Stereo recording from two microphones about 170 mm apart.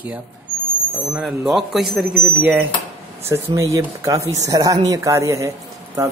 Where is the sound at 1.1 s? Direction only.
5° right (ahead or behind).